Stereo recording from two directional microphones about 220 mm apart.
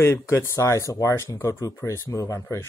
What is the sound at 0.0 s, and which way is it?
Speech, 10° left (ahead or behind).